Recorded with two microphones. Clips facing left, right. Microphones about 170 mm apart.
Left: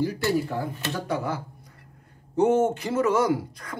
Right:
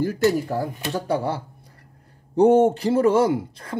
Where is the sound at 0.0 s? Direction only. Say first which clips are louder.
Right 4 dB; 45° right (ahead or behind).